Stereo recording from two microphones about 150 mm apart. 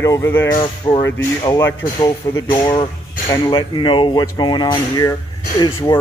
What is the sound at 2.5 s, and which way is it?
Speech, 30° left (ahead or behind).